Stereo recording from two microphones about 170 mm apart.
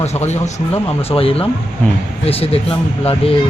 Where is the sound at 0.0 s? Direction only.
40° left (ahead or behind).